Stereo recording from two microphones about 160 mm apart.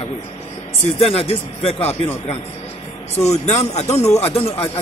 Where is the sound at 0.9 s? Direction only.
40° left (ahead or behind).